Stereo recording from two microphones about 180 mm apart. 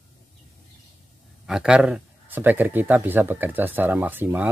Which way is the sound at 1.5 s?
5° right (ahead or behind).